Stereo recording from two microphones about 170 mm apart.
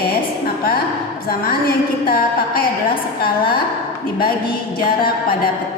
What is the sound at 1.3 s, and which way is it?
Speech, 60° left (ahead or behind).